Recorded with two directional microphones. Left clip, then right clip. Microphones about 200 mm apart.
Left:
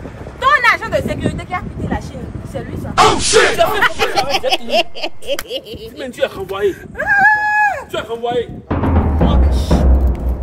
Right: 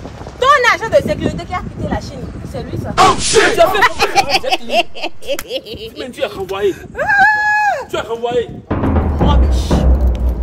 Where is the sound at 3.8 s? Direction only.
50° right (ahead or behind).